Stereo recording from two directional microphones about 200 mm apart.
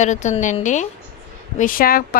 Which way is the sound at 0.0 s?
35° left (ahead or behind).